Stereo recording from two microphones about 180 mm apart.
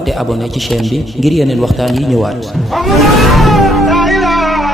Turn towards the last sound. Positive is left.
turn(degrees=0)  # may be behind; listen again after turning